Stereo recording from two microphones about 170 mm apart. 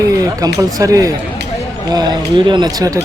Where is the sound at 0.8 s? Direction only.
20° right (ahead or behind).